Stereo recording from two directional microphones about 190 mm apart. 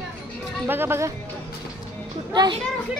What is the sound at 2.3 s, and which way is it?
Speech, 25° right (ahead or behind).